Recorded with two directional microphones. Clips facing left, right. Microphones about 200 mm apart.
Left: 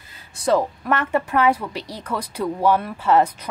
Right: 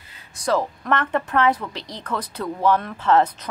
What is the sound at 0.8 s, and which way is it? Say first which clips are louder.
A woman's voice: left 1 dB; 10° left (ahead or behind).